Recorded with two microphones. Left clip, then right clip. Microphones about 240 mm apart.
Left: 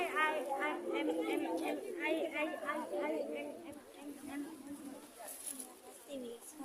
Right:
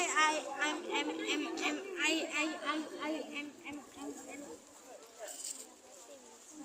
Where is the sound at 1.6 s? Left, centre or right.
Right.